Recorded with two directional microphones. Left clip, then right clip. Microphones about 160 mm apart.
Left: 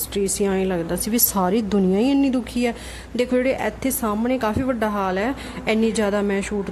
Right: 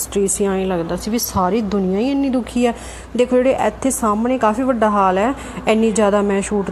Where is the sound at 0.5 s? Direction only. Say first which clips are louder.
Right 3 dB; 10° left (ahead or behind).